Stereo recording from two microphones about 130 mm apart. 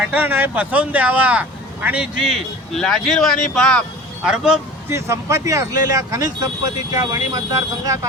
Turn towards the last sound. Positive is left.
turn(degrees=-25)  # may be behind; listen again after turning